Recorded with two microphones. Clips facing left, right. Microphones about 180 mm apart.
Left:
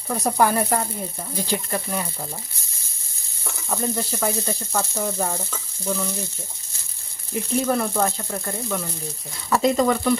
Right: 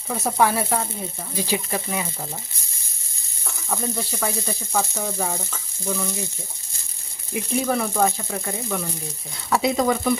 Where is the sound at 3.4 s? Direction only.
10° left (ahead or behind).